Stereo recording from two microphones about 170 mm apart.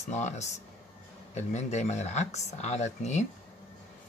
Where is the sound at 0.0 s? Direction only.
40° left (ahead or behind).